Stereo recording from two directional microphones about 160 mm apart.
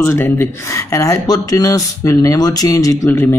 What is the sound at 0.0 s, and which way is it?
Speech, 15° left (ahead or behind).